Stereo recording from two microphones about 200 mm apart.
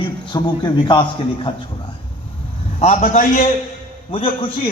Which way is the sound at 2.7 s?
35° left (ahead or behind).